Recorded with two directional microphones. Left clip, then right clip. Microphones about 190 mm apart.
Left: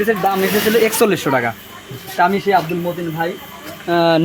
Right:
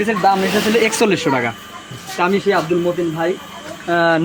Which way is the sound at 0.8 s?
20° left (ahead or behind).